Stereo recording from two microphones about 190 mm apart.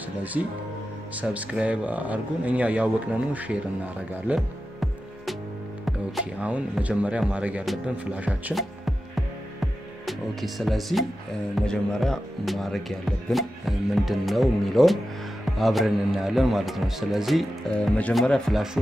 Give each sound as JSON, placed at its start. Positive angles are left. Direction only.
{"t": 0.2, "sound": "speech", "side_deg": -10}
{"t": 9.1, "sound": "music", "side_deg": 0}
{"t": 11.5, "sound": "speech", "side_deg": 5}